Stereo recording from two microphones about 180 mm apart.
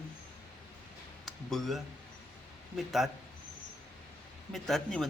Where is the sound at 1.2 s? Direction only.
Centre (ahead or behind).